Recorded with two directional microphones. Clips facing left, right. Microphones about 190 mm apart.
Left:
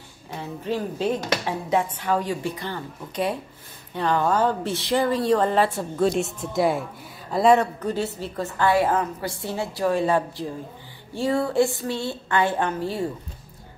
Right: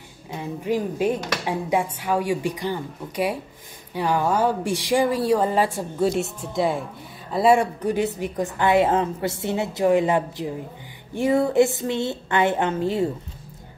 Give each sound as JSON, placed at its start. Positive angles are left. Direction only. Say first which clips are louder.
{"t": 0.4, "sound": "a woman's voice", "louder": "right 3 dB", "side_deg": -15}
{"t": 6.5, "sound": "speech", "louder": "left 1 dB", "side_deg": 5}
{"t": 7.3, "sound": "a woman's voice", "louder": "even", "side_deg": -10}